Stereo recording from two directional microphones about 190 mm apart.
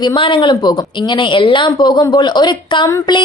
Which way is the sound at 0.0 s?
25° left (ahead or behind).